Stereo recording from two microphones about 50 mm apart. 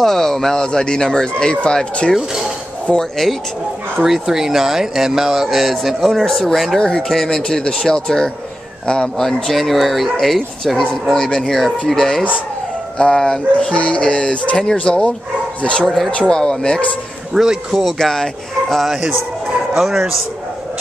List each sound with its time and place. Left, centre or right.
0.0 s speech: centre
2.1 s speech: centre
3.0 s speech: centre
4.0 s speech: centre
6.8 s speech: centre
7.1 s speech: centre
9.5 s speech: centre
17.3 s speech: centre
17.9 s speech: centre
19.7 s speech: centre